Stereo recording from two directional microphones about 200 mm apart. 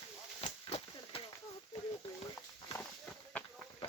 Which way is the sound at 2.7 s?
10° left (ahead or behind).